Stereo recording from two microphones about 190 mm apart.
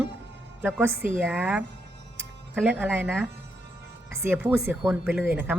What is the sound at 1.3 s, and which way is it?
Speech, 10° right (ahead or behind).